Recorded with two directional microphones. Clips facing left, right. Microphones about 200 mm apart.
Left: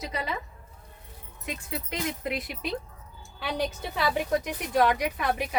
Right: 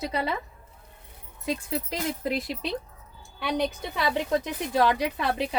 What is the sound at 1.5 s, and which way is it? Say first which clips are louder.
Speech: right 6 dB; 30° right (ahead or behind).